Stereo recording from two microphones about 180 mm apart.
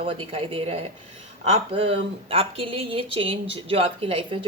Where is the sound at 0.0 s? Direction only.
30° right (ahead or behind).